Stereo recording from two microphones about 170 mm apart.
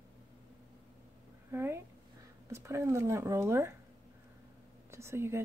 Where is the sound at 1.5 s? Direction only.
15° right (ahead or behind).